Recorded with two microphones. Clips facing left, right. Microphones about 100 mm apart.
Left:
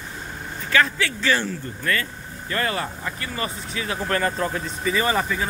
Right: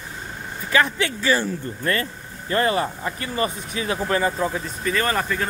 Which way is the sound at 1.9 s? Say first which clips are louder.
Right 1 dB; 30° right (ahead or behind).